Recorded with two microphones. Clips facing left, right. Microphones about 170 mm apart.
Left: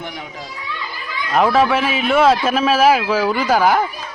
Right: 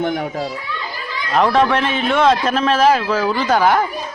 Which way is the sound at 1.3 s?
5° left (ahead or behind).